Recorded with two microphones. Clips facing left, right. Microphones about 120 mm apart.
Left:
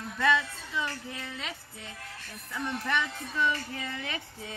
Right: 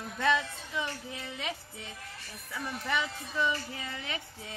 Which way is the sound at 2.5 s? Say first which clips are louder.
Left 2 dB; 5° right (ahead or behind).